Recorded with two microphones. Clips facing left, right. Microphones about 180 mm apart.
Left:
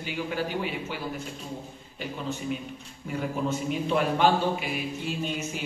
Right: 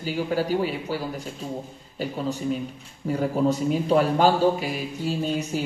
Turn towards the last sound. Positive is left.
turn(degrees=-35)  # may be behind; listen again after turning